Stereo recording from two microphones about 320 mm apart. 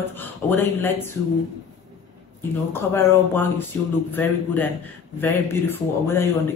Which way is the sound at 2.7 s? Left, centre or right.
Centre.